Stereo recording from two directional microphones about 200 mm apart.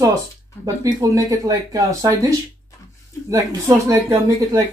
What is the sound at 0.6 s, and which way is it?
Speech, 15° right (ahead or behind).